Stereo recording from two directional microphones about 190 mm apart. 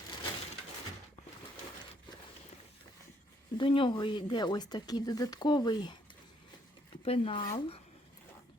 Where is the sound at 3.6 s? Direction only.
25° left (ahead or behind).